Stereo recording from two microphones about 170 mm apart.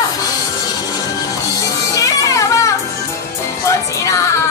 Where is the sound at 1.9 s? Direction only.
20° left (ahead or behind).